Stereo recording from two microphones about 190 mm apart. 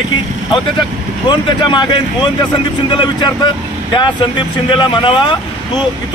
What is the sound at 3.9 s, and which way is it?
Speech, 25° left (ahead or behind).